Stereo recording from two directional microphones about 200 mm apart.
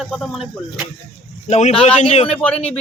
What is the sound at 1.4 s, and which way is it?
Speech, 35° left (ahead or behind).